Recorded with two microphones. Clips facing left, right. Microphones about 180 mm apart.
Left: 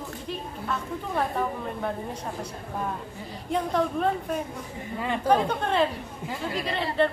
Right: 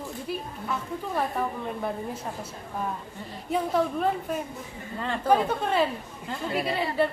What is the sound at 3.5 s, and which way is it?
Speech, 5° right (ahead or behind).